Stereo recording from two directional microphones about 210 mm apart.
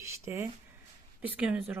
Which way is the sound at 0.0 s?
15° right (ahead or behind).